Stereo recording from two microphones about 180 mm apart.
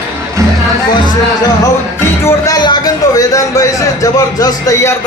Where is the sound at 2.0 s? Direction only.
15° left (ahead or behind).